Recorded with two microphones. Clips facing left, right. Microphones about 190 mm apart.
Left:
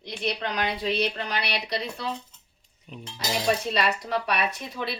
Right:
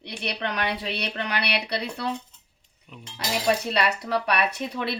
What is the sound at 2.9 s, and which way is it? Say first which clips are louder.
Speech: left 4 dB; 20° left (ahead or behind).